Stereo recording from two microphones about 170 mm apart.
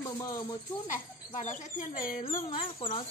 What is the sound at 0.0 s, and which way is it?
Speech, 20° left (ahead or behind).